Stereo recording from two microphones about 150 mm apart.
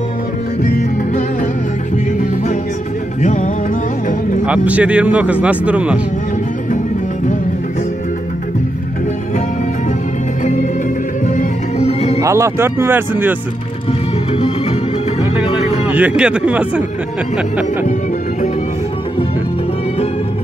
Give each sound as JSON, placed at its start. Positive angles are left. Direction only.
{"t": 3.2, "sound": "music", "side_deg": 55}
{"t": 4.5, "sound": "a man's voice", "side_deg": -10}
{"t": 10.4, "sound": "music", "side_deg": 50}
{"t": 12.2, "sound": "a man's voice", "side_deg": -20}
{"t": 15.9, "sound": "a man's voice", "side_deg": -10}